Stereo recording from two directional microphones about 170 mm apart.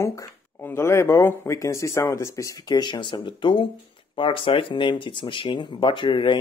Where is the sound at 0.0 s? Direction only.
15° left (ahead or behind).